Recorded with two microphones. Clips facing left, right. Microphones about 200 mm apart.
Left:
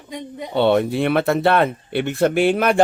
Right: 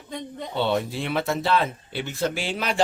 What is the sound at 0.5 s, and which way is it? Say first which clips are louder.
Speech: left 8 dB; 60° left (ahead or behind).